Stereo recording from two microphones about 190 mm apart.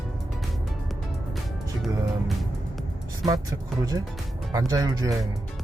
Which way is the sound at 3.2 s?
20° right (ahead or behind).